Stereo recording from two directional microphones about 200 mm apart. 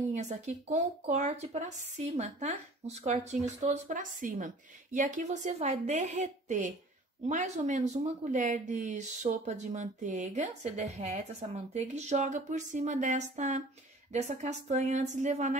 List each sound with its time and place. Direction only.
0.1 s speech: 35° right (ahead or behind)